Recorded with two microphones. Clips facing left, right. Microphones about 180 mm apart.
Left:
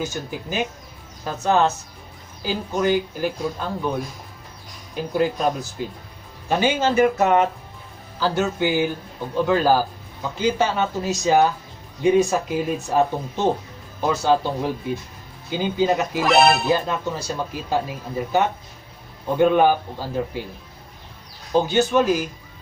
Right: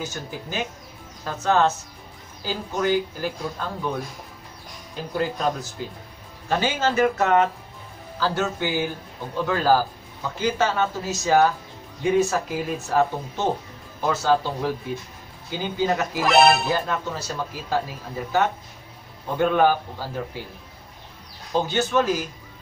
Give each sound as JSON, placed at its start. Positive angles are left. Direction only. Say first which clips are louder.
{"t": 0.0, "sound": "speech", "louder": "left 4 dB", "side_deg": 15}
{"t": 4.9, "sound": "speech", "louder": "left 5 dB", "side_deg": 15}
{"t": 6.5, "sound": "speech", "louder": "left 3 dB", "side_deg": 15}
{"t": 16.2, "sound": "speech", "louder": "even", "side_deg": 0}
{"t": 16.7, "sound": "speech", "louder": "left 3 dB", "side_deg": 20}
{"t": 21.5, "sound": "speech", "louder": "left 4 dB", "side_deg": 15}